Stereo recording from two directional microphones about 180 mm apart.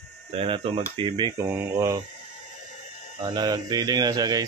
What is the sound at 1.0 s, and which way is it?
Mantra, 25° right (ahead or behind).